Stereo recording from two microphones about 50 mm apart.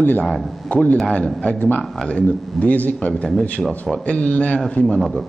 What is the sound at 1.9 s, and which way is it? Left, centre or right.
Speech, centre.